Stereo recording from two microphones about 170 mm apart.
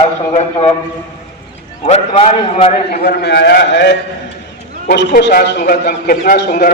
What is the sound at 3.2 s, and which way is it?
A man's voice, 80° left.